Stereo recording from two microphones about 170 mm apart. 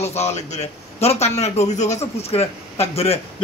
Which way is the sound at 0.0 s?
40° left (ahead or behind).